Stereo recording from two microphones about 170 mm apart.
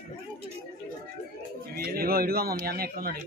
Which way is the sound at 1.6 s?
65° right (ahead or behind).